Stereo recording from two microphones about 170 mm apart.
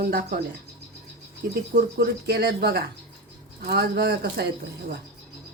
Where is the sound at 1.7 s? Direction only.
70° right (ahead or behind).